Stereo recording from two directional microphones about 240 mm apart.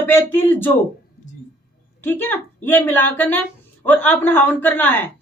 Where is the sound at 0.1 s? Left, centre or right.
Centre.